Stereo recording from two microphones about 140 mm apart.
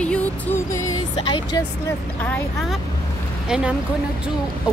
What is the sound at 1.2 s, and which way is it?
Speech, 35° left (ahead or behind).